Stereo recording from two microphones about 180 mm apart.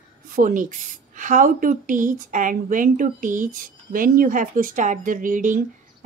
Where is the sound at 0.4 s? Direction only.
45° right (ahead or behind).